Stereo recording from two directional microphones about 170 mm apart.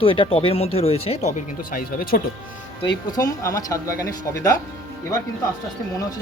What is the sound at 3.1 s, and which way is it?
Speech, 20° left (ahead or behind).